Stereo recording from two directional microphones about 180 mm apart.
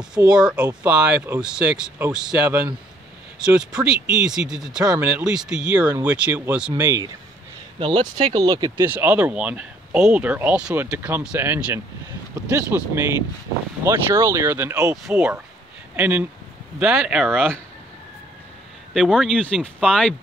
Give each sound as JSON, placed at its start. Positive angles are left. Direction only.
{"t": 0.3, "sound": "speech", "side_deg": -5}
{"t": 6.7, "sound": "speech", "side_deg": -20}
{"t": 18.9, "sound": "speech", "side_deg": 5}